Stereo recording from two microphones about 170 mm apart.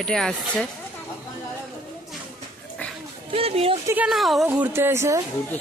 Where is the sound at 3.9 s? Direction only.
5° right (ahead or behind).